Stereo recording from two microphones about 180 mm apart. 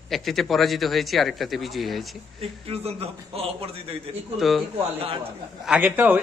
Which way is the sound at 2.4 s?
35° right (ahead or behind).